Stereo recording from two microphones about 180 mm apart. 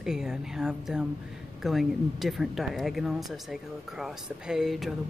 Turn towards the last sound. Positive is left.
turn(degrees=0)  # may be behind; listen again after turning